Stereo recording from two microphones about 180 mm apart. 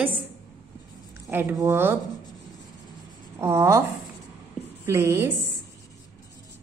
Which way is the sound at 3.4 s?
15° right (ahead or behind).